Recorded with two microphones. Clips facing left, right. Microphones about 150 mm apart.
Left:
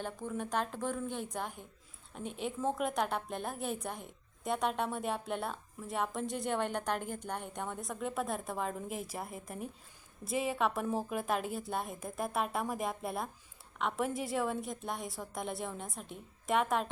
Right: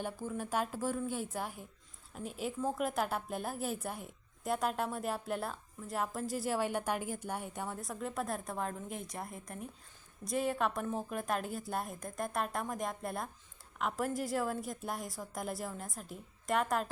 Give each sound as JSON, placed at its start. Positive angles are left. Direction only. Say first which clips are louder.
{"t": 0.0, "sound": "a woman's voice", "louder": "even", "side_deg": -5}